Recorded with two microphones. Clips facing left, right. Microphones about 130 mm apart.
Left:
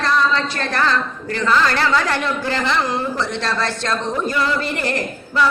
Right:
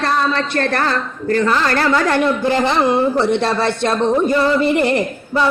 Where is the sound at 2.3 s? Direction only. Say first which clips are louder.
Right 5 dB; 20° right (ahead or behind).